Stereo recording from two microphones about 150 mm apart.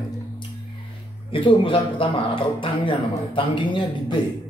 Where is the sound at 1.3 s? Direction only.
35° left (ahead or behind).